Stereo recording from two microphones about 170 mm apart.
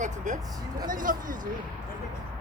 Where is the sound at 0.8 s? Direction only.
50° right (ahead or behind).